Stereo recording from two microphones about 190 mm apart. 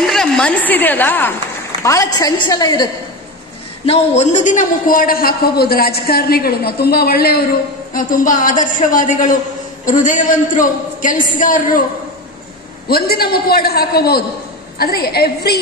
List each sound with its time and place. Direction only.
0.0 s a woman's voice: centre (ahead or behind); by 2.9 s 20° left (ahead or behind)
3.8 s a man's voice: 35° left (ahead or behind)
12.8 s a man's voice: 55° left (ahead or behind)